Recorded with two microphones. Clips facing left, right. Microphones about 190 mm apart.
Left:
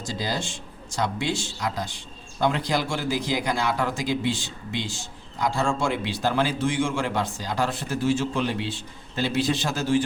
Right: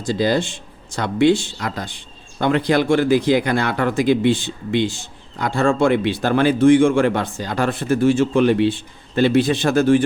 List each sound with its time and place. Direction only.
0.0 s speech: 60° right (ahead or behind)